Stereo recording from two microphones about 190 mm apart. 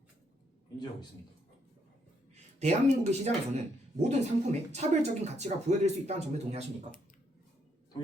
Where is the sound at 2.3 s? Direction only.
35° right (ahead or behind).